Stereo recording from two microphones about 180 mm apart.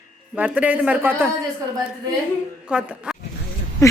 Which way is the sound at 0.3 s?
5° right (ahead or behind).